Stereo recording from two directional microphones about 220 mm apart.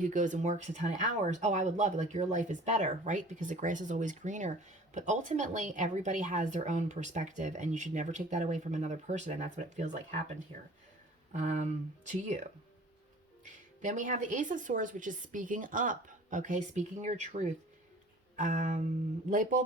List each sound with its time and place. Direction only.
0.0 s a woman's voice: 35° right (ahead or behind)
13.8 s a woman's voice: 35° right (ahead or behind)